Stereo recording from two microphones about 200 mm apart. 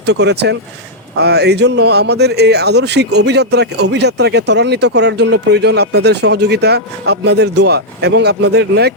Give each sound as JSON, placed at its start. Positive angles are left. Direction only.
{"t": 0.0, "sound": "speech", "side_deg": -60}